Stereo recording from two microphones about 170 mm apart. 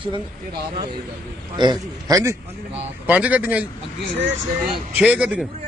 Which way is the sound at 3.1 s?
10° right (ahead or behind).